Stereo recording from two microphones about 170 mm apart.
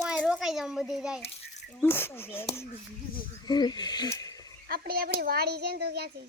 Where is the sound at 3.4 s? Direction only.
25° left (ahead or behind).